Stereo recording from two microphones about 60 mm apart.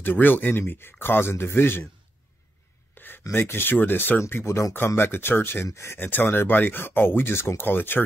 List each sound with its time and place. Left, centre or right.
0.0 s speech: left
2.9 s a sound: left
3.3 s speech: left
4.3 s speech: left